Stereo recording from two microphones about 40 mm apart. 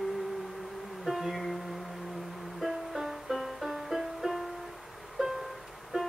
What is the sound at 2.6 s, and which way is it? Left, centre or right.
Music, centre.